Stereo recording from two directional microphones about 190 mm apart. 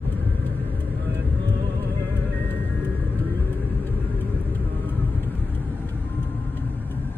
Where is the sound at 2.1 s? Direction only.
10° left (ahead or behind).